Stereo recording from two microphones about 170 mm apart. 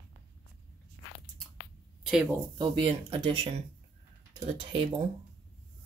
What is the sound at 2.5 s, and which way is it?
Speech, 30° right (ahead or behind).